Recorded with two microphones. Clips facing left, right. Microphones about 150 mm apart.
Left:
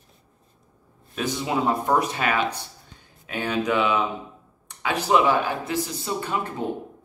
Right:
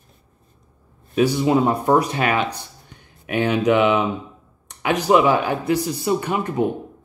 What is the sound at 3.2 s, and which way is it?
Speech, 20° right (ahead or behind).